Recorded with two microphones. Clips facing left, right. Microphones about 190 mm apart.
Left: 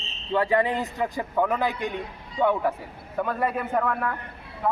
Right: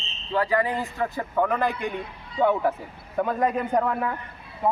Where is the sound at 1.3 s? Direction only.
5° left (ahead or behind); by 4.1 s 15° right (ahead or behind).